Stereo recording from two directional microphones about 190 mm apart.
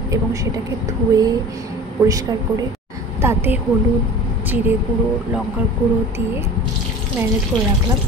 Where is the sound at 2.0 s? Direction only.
20° right (ahead or behind).